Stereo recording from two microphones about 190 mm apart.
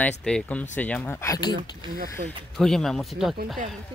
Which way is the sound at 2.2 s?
55° right (ahead or behind).